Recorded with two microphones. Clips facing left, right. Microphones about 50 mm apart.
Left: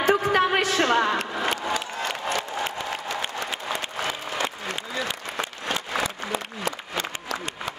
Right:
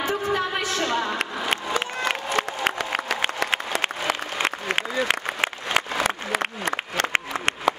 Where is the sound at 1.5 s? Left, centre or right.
Right.